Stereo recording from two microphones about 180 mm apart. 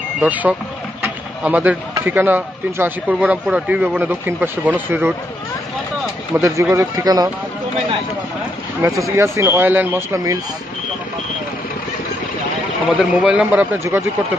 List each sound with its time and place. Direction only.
0.2 s speech: 10° right (ahead or behind)
6.3 s speech: 15° right (ahead or behind)
8.8 s speech: 15° right (ahead or behind)
12.9 s speech: 5° right (ahead or behind)